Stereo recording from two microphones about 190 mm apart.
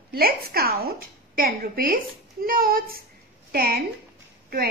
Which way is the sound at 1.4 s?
50° right (ahead or behind).